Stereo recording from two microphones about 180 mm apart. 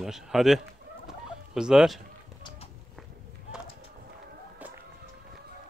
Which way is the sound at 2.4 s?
25° left (ahead or behind).